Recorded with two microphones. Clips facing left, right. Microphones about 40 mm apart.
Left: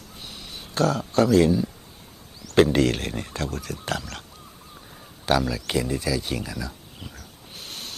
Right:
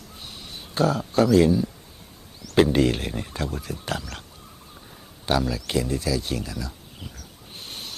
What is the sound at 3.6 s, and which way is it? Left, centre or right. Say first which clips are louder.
Speech: even; left.